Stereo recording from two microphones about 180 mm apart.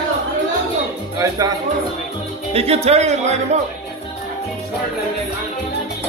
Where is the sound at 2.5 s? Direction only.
35° right (ahead or behind).